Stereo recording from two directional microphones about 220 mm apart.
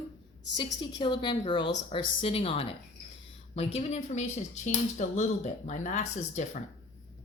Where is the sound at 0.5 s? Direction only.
20° left (ahead or behind).